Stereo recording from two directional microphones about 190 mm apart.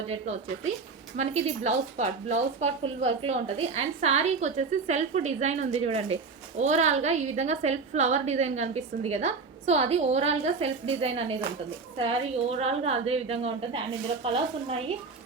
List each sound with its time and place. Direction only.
0.1 s a woman's voice: 35° right (ahead or behind)